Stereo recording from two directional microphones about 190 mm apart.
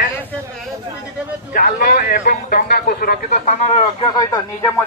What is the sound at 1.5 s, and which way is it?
A man's voice, 50° left (ahead or behind).